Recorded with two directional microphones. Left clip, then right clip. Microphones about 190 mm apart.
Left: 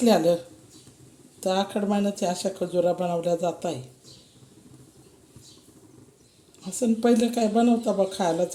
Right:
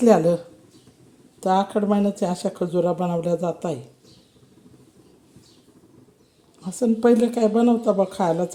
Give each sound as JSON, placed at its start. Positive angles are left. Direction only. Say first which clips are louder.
{"t": 0.1, "sound": "speech", "louder": "right 3 dB", "side_deg": -30}
{"t": 6.6, "sound": "speech", "louder": "right 4 dB", "side_deg": -25}